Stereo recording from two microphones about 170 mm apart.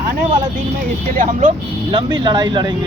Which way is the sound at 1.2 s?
45° right (ahead or behind).